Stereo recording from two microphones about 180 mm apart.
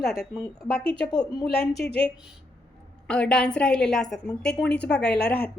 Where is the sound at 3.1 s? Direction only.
5° left (ahead or behind).